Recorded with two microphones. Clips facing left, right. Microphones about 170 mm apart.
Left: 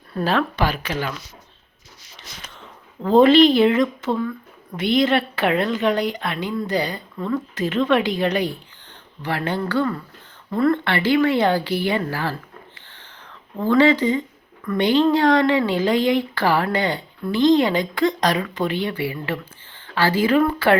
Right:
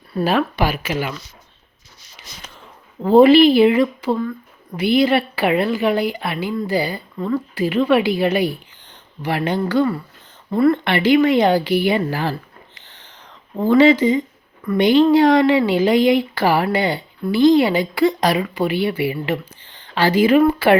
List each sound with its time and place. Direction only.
0.1 s speech: 10° right (ahead or behind)
3.0 s speech: 5° right (ahead or behind)